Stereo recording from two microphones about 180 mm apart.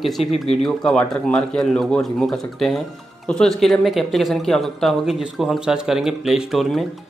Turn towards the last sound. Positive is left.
turn(degrees=0)  # may be behind; listen again after turning